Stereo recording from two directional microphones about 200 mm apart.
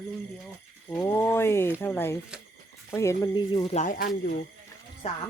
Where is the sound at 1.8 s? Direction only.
10° left (ahead or behind); by 4.3 s 45° left (ahead or behind).